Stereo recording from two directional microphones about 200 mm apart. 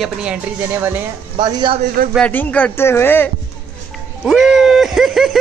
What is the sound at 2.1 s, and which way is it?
Speech, 5° left (ahead or behind).